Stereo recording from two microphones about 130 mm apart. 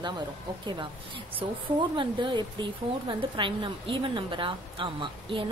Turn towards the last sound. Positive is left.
turn(degrees=-40)  # may be behind; listen again after turning